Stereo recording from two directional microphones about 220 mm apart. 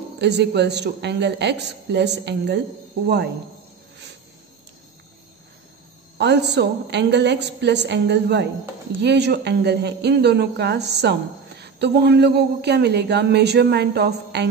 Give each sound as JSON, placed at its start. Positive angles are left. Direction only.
{"t": 0.2, "sound": "speech", "side_deg": -50}
{"t": 6.1, "sound": "speech", "side_deg": -50}